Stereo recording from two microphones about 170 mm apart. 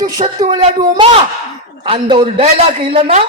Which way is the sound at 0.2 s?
30° right (ahead or behind).